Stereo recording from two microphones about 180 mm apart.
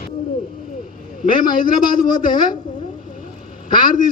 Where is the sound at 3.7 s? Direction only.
50° left (ahead or behind).